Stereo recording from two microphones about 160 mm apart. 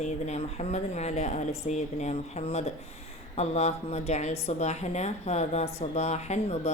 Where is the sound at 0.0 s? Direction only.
45° left (ahead or behind).